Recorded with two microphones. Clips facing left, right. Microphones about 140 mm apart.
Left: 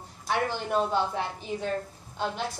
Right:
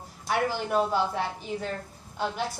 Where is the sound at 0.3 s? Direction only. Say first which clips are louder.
Right 1 dB; 10° right (ahead or behind).